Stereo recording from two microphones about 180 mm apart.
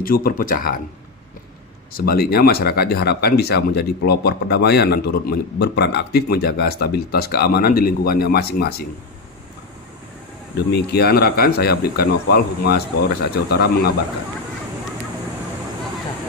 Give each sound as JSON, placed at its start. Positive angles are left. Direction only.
{"t": 0.0, "sound": "speech", "side_deg": 55}
{"t": 2.0, "sound": "speech", "side_deg": 55}
{"t": 10.7, "sound": "speech", "side_deg": 60}